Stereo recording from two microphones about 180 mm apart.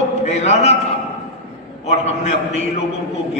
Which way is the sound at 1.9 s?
35° left (ahead or behind).